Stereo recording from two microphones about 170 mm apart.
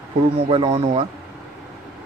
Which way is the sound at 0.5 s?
35° right (ahead or behind).